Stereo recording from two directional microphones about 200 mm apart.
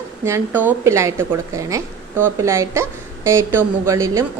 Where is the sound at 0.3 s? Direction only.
10° right (ahead or behind).